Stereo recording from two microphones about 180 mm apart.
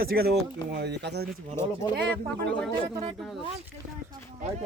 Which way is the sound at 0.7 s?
70° right (ahead or behind).